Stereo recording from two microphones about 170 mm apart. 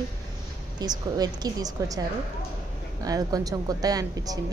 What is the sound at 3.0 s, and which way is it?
Speech, 20° right (ahead or behind).